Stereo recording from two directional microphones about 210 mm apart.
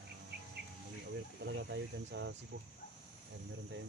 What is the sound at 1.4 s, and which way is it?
Speech, 55° right (ahead or behind).